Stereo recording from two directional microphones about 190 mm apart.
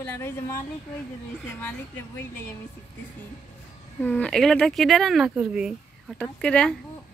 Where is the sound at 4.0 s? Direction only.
5° left (ahead or behind).